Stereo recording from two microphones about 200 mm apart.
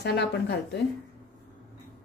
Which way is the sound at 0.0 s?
55° left (ahead or behind).